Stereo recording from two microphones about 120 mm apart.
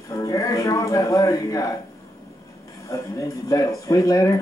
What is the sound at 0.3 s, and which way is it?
Speech, 25° left (ahead or behind).